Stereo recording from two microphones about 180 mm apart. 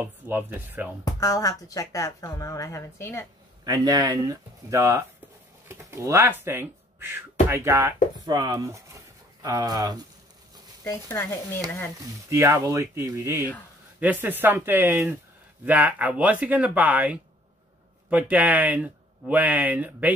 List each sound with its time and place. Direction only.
0.0 s speech: 10° right (ahead or behind)
1.0 s speech: 20° left (ahead or behind)
3.6 s speech: 20° right (ahead or behind)
10.8 s speech: 15° left (ahead or behind)
12.3 s speech: 15° right (ahead or behind)